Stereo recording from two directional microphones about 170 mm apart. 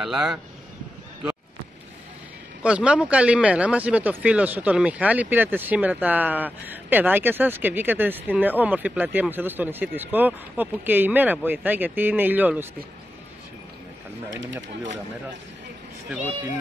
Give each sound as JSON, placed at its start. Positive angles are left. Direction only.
{"t": 0.0, "sound": "speech", "side_deg": -5}
{"t": 2.6, "sound": "speech", "side_deg": -5}
{"t": 14.3, "sound": "speech", "side_deg": -90}